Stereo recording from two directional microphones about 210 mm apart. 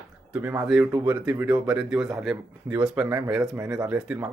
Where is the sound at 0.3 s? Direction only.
5° right (ahead or behind).